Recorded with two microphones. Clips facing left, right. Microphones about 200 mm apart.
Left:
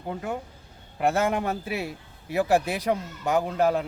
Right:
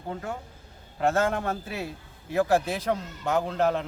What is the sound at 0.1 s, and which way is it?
A man's voice, 15° left (ahead or behind).